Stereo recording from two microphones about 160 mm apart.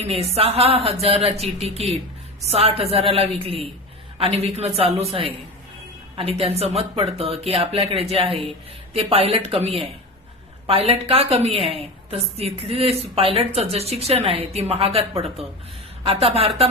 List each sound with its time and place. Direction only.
0.0 s a woman's voice: 40° right (ahead or behind)